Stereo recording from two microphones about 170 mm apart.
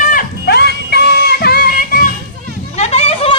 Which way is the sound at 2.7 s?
40° left (ahead or behind).